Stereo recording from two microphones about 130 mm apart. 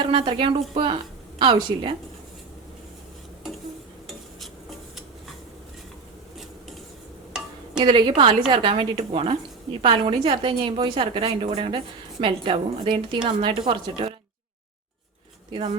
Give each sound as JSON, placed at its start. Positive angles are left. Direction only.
{"t": 0.0, "sound": "a woman's voice", "side_deg": -40}
{"t": 7.3, "sound": "a sound", "side_deg": -5}
{"t": 7.8, "sound": "a woman's voice", "side_deg": -40}